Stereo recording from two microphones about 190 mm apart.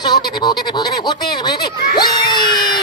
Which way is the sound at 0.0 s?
20° left (ahead or behind).